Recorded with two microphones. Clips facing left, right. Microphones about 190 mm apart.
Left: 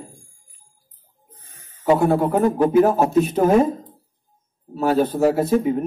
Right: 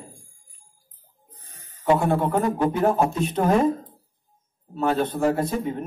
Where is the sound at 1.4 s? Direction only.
35° right (ahead or behind).